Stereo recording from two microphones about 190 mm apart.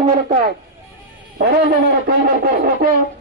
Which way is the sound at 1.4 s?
50° right (ahead or behind).